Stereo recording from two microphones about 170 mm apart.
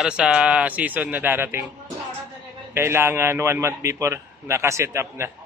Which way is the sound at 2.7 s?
15° right (ahead or behind).